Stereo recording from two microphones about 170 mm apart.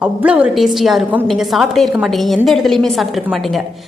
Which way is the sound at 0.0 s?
5° right (ahead or behind).